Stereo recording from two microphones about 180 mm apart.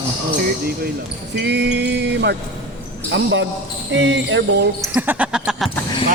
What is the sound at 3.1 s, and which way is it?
Speech, 80° right.